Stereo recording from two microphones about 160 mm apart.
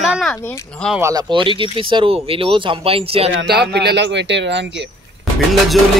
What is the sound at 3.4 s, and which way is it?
Speech, 90° right.